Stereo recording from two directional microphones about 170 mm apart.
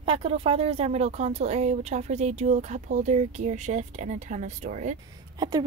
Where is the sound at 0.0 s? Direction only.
35° right (ahead or behind).